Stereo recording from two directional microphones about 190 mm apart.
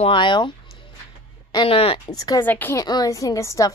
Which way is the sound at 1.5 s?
30° left (ahead or behind).